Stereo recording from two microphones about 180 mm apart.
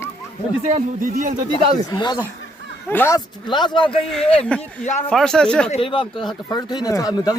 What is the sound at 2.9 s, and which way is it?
Speech, 10° left (ahead or behind).